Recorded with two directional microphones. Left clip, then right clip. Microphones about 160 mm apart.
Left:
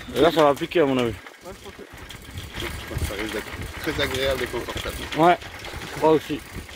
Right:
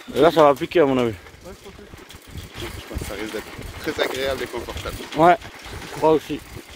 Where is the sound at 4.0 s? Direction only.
60° right (ahead or behind).